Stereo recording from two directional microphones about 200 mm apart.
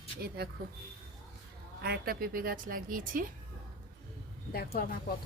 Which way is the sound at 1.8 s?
50° right (ahead or behind).